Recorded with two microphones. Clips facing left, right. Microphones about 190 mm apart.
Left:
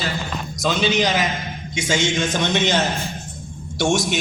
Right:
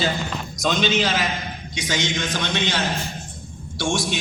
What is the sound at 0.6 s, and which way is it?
A man's voice, 5° left (ahead or behind).